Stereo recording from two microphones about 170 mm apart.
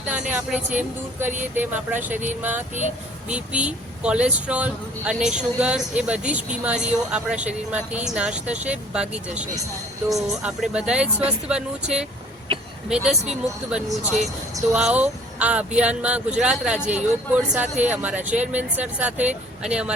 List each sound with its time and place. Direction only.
0.1 s speech: 10° right (ahead or behind)
1.5 s speech: 10° right (ahead or behind)
2.0 s speech: 45° right (ahead or behind)
2.4 s speech: 10° right (ahead or behind)